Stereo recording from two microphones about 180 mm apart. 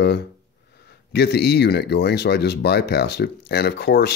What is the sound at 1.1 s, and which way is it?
Speech, 65° left (ahead or behind).